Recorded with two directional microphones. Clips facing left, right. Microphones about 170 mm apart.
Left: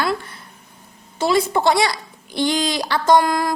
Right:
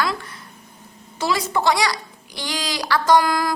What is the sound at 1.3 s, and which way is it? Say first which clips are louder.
A woman's voice: left 3 dB; 25° left (ahead or behind).